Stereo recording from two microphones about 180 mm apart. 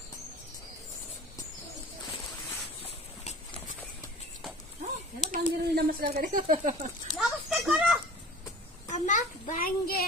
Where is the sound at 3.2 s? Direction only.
40° left (ahead or behind).